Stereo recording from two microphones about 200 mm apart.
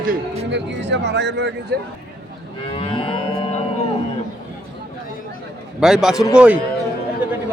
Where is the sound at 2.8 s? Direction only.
30° left (ahead or behind).